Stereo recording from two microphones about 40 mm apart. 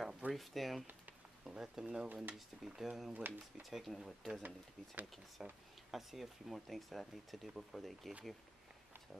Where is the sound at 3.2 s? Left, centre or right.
Right.